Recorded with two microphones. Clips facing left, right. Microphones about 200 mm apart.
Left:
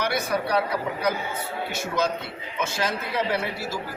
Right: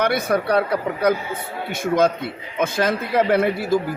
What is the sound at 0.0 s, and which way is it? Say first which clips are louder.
Speech: right 6 dB; 55° right (ahead or behind).